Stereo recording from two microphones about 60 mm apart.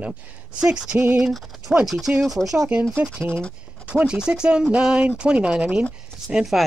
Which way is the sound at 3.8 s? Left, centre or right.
Centre.